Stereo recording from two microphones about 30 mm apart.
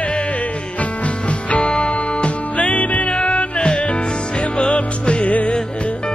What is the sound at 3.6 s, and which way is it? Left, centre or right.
Music, left.